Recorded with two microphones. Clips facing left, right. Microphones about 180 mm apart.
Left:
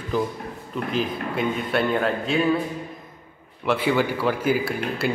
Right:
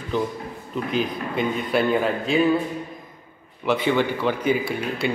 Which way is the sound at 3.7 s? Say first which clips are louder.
Right 1 dB; 5° left (ahead or behind).